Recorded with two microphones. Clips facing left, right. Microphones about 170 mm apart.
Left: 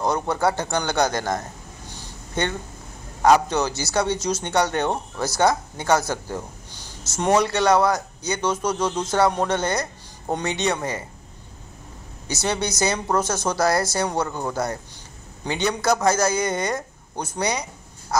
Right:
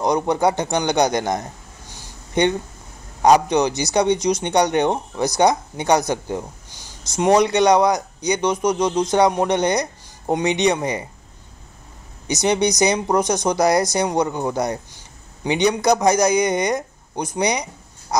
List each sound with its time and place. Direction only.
0.0 s speech: 15° right (ahead or behind)
1.9 s a sound: 15° right (ahead or behind)
3.2 s speech: 15° right (ahead or behind)
12.3 s speech: 15° right (ahead or behind)